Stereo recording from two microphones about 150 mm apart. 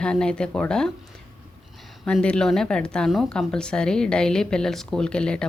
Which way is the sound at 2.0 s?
5° left (ahead or behind).